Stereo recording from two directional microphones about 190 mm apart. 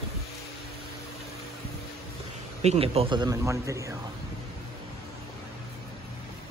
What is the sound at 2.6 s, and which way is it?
A man's voice, 35° right (ahead or behind).